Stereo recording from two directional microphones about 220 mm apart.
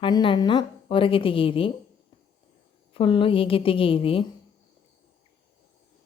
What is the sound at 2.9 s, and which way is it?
A woman's voice, 25° left (ahead or behind).